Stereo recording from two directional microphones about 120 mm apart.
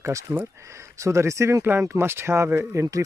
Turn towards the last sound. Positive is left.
turn(degrees=-25)  # may be behind; listen again after turning